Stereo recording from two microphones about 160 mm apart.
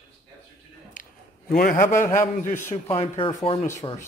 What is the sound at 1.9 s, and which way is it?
Speech, 15° left (ahead or behind).